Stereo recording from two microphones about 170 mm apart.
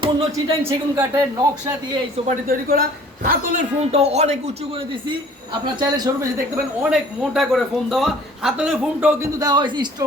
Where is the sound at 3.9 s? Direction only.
35° right (ahead or behind); by 6.3 s 20° right (ahead or behind).